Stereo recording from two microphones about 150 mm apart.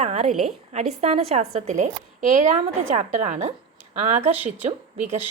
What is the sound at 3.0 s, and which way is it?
Speech, 55° right (ahead or behind).